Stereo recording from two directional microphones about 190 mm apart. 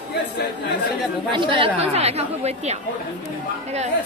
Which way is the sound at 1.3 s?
25° right (ahead or behind).